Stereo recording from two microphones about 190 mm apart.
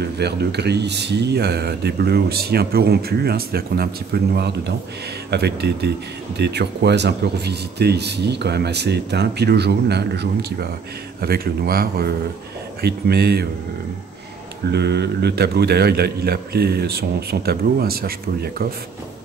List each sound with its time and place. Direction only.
0.0 s speech: 60° right (ahead or behind)
14.7 s speech: 60° right (ahead or behind)